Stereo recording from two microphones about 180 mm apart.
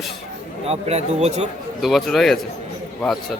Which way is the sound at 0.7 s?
35° right (ahead or behind).